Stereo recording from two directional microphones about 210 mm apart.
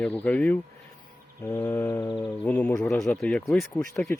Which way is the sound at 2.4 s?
10° left (ahead or behind).